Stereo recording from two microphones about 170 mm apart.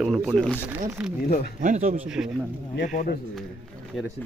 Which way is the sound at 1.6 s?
45° right (ahead or behind).